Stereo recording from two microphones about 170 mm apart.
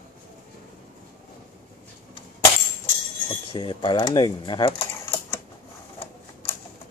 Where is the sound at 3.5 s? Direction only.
30° left (ahead or behind).